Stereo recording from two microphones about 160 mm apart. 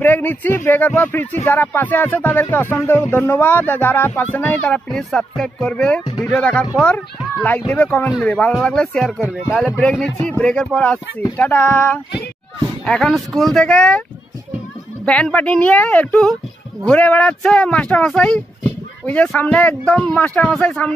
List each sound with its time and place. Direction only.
0.0 s speech: 10° left (ahead or behind)
15.0 s speech: 5° left (ahead or behind)